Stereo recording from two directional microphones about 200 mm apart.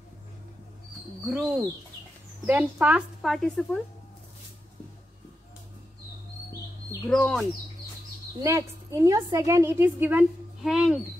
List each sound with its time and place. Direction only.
1.3 s speech: centre (ahead or behind)
7.1 s speech: 5° left (ahead or behind)
8.4 s a woman's voice: 15° right (ahead or behind)